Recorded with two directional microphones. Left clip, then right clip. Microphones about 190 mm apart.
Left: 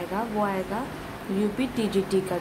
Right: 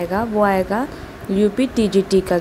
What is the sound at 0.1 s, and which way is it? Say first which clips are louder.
Speech: right 10 dB; 30° right (ahead or behind).